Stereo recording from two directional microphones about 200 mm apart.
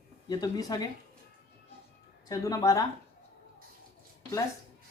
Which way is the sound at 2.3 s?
15° left (ahead or behind).